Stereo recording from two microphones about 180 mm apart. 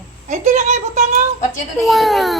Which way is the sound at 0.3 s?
40° right (ahead or behind).